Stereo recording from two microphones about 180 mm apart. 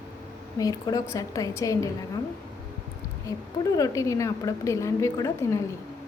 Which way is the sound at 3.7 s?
20° left (ahead or behind).